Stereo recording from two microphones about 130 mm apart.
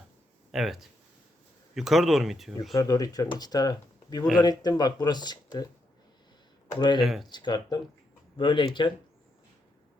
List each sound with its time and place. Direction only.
0.5 s speech: centre (ahead or behind)
2.7 s speech: 25° left (ahead or behind)
6.7 s speech: 35° left (ahead or behind)
7.0 s speech: centre (ahead or behind)
7.3 s speech: 35° left (ahead or behind)